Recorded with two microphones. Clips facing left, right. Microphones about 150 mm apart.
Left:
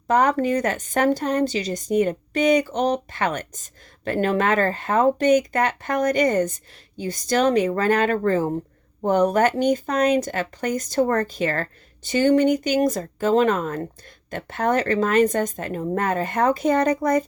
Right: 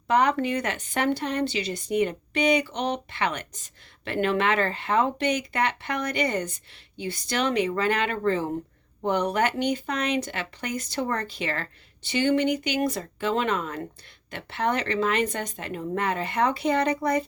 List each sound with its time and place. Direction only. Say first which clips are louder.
0.1 s a woman's voice: left 4 dB; 40° left (ahead or behind)